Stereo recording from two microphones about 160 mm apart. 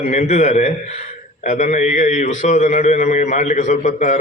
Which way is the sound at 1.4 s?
55° left (ahead or behind).